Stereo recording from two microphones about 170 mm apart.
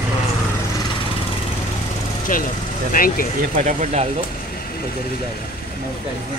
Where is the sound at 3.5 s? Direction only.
45° right (ahead or behind).